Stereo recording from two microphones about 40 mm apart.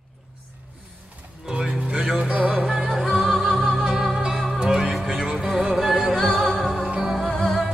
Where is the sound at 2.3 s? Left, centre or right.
Right.